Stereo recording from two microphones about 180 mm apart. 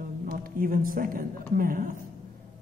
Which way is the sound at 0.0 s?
50° right (ahead or behind).